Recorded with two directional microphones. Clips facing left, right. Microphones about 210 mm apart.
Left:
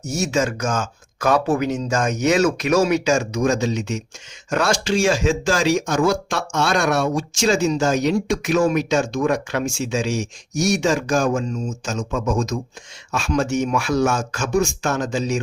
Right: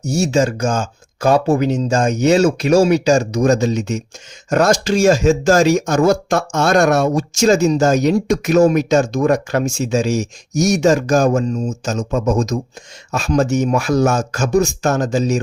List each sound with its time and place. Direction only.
0.0 s speech: 30° right (ahead or behind)